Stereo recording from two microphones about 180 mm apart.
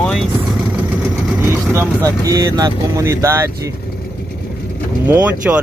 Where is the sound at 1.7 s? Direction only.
15° right (ahead or behind).